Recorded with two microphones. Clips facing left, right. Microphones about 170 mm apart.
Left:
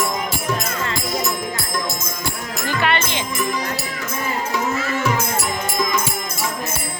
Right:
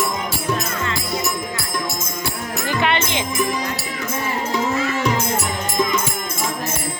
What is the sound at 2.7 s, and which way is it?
Music, 20° right (ahead or behind).